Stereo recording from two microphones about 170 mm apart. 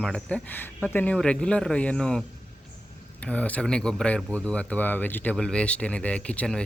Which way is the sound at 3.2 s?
5° left (ahead or behind).